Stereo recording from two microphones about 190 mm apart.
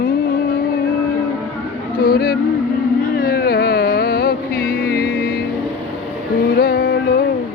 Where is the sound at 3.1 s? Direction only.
55° left (ahead or behind).